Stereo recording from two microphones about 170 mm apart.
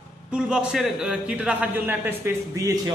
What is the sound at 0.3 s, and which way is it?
A man's voice, 5° right (ahead or behind).